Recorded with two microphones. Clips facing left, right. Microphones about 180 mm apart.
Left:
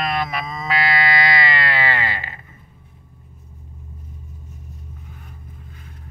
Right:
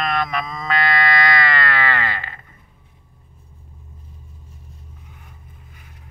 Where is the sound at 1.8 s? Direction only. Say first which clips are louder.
Even; 25° left (ahead or behind).